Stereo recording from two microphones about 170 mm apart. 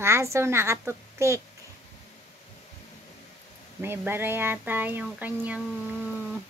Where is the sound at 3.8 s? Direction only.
10° right (ahead or behind).